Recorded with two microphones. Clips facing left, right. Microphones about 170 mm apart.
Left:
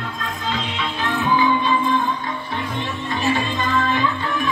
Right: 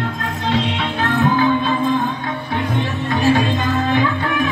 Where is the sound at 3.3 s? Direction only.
60° right (ahead or behind).